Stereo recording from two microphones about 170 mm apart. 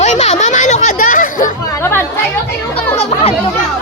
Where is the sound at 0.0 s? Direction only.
40° left (ahead or behind).